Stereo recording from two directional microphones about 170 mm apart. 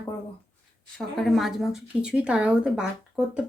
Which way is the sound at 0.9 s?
Centre (ahead or behind).